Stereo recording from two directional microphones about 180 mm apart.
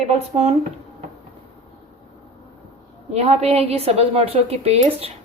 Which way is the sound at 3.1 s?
35° right (ahead or behind).